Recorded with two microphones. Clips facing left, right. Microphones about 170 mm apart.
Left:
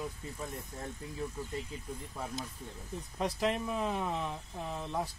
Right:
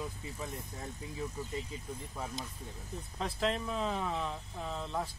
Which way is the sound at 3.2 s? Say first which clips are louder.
Left 2 dB; 15° left (ahead or behind).